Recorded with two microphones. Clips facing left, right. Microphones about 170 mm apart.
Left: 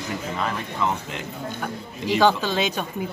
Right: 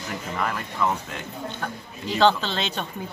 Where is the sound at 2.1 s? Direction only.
10° left (ahead or behind).